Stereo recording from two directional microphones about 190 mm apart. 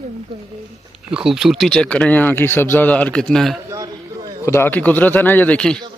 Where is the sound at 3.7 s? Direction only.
20° right (ahead or behind).